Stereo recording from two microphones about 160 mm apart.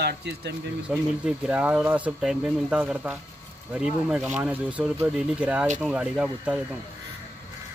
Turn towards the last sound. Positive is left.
turn(degrees=-5)  # may be behind; listen again after turning